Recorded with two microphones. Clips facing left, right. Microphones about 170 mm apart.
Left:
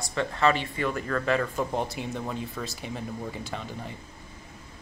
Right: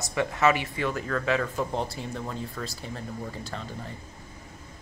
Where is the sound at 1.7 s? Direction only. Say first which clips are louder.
Left 1 dB; 20° left (ahead or behind).